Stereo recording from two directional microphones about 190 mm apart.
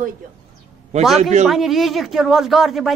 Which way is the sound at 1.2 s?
35° right (ahead or behind).